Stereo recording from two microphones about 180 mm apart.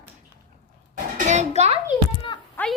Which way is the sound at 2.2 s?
25° left (ahead or behind).